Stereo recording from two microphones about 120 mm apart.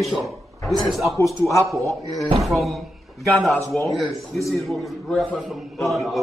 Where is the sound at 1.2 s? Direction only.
25° left (ahead or behind).